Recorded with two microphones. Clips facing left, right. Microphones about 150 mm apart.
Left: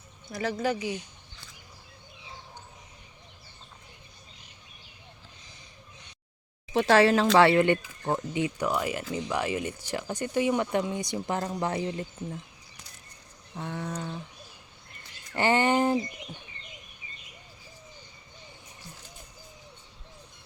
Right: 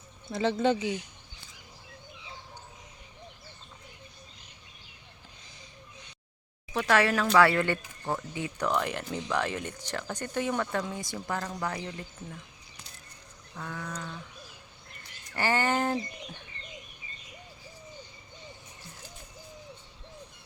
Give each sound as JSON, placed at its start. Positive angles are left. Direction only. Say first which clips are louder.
{"t": 0.3, "sound": "speech", "louder": "right 3 dB", "side_deg": -25}
{"t": 6.7, "sound": "speech", "louder": "left 5 dB", "side_deg": 30}
{"t": 13.6, "sound": "speech", "louder": "left 4 dB", "side_deg": 25}
{"t": 15.4, "sound": "speech", "louder": "left 4 dB", "side_deg": 20}